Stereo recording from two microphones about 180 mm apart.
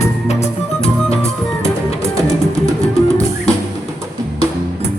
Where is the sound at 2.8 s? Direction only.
35° left (ahead or behind).